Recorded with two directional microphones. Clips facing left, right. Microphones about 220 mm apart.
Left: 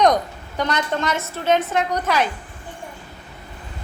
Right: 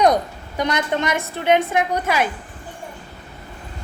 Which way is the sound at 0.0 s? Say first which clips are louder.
Right 1 dB; 10° right (ahead or behind).